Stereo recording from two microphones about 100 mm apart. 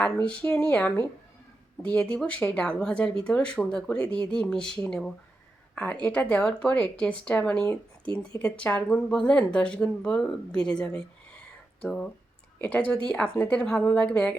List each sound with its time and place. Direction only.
0.0 s a woman's voice: 10° left (ahead or behind)